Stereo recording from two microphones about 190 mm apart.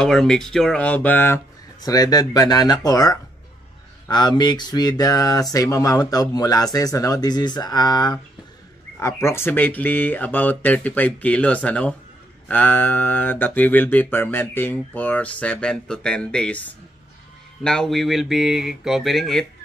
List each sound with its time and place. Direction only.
0.0 s speech: centre (ahead or behind)
17.6 s speech: 5° left (ahead or behind)